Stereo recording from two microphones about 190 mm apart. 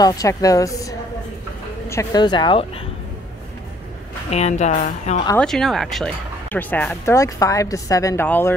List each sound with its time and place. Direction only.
0.0 s speech: 20° left (ahead or behind)
4.3 s a woman's voice: 35° left (ahead or behind)
5.4 s speech: centre (ahead or behind)